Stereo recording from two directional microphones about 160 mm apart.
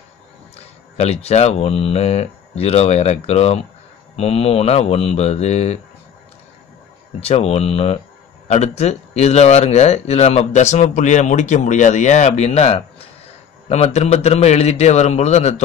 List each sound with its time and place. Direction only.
0.9 s speech: 40° left (ahead or behind)
7.2 s speech: 40° left (ahead or behind)